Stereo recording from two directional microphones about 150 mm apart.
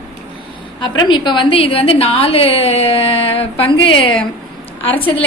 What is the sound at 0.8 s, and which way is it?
A woman's voice, 30° left (ahead or behind).